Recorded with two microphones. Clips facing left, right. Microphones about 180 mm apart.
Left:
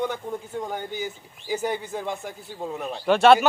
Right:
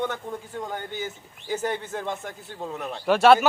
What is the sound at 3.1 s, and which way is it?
Speech, 5° right (ahead or behind).